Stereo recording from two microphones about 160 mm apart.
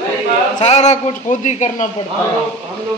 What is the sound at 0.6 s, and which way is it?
A man's voice, 45° left (ahead or behind).